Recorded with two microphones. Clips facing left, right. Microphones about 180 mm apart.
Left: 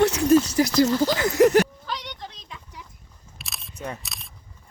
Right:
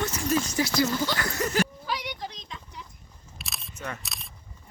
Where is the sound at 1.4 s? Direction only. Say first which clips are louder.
Left 12 dB; 70° left (ahead or behind).